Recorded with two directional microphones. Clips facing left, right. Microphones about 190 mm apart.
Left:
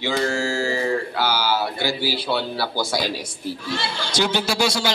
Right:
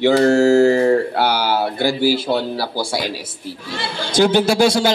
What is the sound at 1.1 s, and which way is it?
Speech, 60° right (ahead or behind).